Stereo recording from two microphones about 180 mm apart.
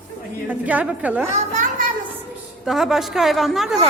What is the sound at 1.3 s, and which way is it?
Speech, 40° right (ahead or behind).